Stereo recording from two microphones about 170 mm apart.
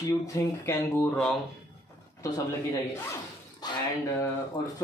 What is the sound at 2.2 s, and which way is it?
Speech, 15° left (ahead or behind).